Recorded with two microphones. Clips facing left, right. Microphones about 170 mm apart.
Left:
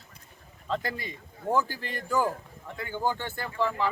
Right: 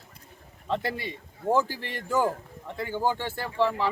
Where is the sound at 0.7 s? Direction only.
25° right (ahead or behind).